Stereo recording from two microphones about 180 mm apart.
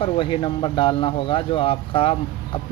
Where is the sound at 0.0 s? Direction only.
30° left (ahead or behind).